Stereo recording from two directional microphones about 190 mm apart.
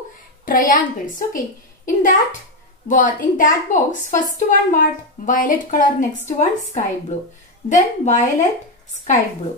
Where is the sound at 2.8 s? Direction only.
45° left (ahead or behind).